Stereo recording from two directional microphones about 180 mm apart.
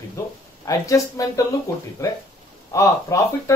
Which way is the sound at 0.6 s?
20° left (ahead or behind).